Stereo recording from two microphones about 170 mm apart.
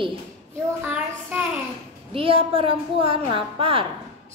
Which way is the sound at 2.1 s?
35° right (ahead or behind).